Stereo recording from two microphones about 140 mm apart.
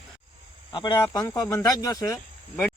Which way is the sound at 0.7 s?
35° left (ahead or behind).